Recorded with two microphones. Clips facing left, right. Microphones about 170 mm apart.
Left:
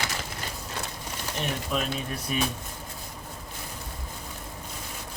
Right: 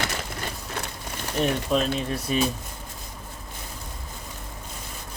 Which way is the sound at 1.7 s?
30° right (ahead or behind).